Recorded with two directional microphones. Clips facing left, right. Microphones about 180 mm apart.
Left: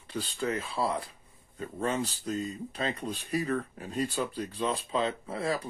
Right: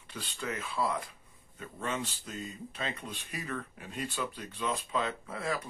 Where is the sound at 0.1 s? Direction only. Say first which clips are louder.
Left 7 dB; 35° left (ahead or behind).